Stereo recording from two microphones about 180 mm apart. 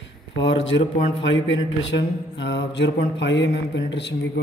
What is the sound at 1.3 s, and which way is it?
Speech, 90° left.